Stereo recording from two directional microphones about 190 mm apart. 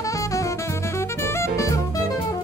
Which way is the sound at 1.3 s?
15° left (ahead or behind).